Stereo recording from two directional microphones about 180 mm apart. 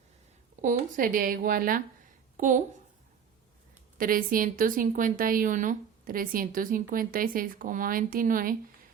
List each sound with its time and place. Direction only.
0.6 s a woman's voice: 45° right (ahead or behind)
3.9 s a woman's voice: 50° right (ahead or behind)